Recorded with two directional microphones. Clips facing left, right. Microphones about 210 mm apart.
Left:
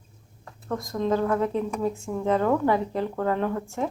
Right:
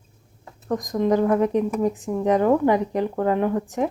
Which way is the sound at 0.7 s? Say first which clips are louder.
Right 5 dB; 15° right (ahead or behind).